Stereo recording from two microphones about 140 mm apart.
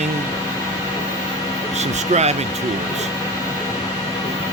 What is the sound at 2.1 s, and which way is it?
Speech, 50° right (ahead or behind).